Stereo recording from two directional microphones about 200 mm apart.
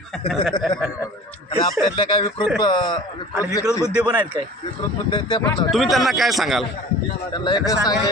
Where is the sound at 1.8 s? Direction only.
25° left (ahead or behind).